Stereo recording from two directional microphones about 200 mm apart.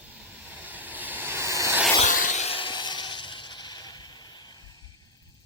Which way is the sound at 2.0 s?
40° left (ahead or behind).